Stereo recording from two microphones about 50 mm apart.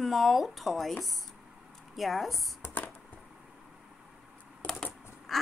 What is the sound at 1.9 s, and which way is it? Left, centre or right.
Speech, centre.